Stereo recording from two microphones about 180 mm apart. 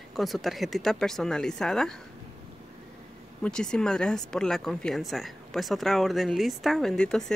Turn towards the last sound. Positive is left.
turn(degrees=5)  # may be behind; listen again after turning